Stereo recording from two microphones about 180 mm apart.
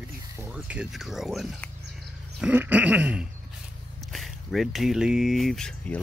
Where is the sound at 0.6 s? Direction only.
5° right (ahead or behind).